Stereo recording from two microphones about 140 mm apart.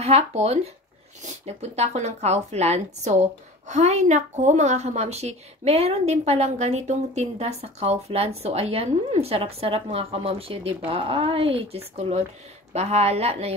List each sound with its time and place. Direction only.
0.0 s speech: 50° right (ahead or behind)